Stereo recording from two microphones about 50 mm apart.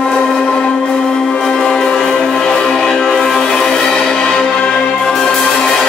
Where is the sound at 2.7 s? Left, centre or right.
Centre.